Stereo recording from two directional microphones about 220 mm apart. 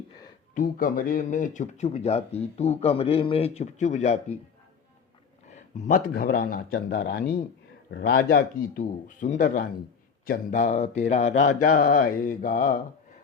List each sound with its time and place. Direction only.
0.5 s speech: 40° left (ahead or behind)
5.5 s a man's voice: 35° left (ahead or behind)